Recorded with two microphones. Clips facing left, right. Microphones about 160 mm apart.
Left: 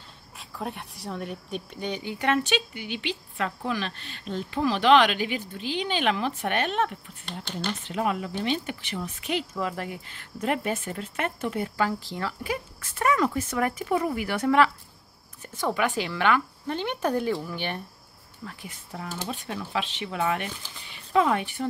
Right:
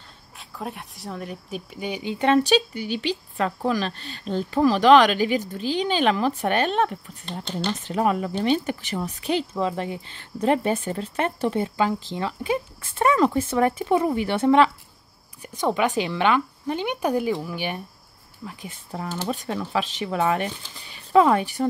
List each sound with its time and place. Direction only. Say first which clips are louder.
0.4 s speech: right 1 dB; centre (ahead or behind)
2.0 s a woman's voice: right 7 dB; 30° right (ahead or behind)
18.7 s speech: right 6 dB; 30° right (ahead or behind)